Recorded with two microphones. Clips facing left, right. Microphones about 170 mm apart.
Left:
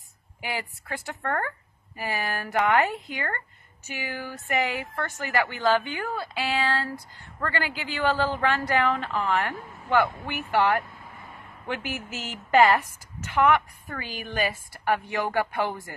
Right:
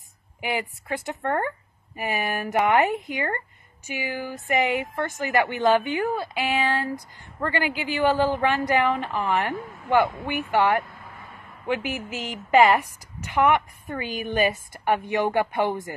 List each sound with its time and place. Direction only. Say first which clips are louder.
0.4 s a man's voice: right 5 dB; 20° right (ahead or behind)